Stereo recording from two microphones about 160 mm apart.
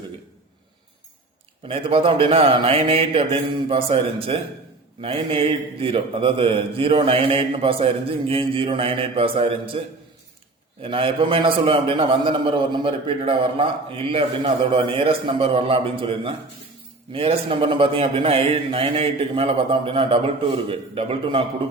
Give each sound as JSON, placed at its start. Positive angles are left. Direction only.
{"t": 1.6, "sound": "a man's voice", "side_deg": -35}
{"t": 10.8, "sound": "a man's voice", "side_deg": -35}